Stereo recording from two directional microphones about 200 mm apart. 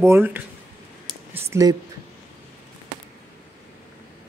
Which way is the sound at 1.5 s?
15° right (ahead or behind).